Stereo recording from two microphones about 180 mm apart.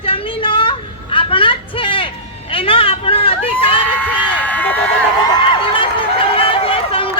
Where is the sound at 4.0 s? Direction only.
10° left (ahead or behind).